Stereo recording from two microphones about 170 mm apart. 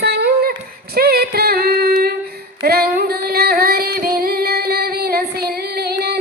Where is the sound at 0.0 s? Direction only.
70° right (ahead or behind).